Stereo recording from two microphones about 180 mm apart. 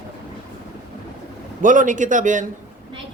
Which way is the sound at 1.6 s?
45° right (ahead or behind).